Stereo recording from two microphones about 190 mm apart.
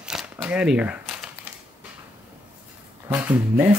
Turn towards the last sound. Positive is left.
turn(degrees=-10)  # may be behind; listen again after turning